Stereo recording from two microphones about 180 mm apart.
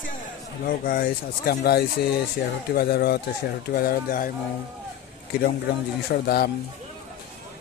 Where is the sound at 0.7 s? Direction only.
55° left (ahead or behind).